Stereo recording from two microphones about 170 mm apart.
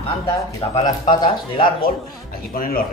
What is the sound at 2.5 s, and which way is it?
Speech, 60° left (ahead or behind).